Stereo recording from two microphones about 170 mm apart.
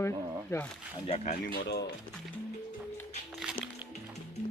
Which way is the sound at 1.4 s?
80° left.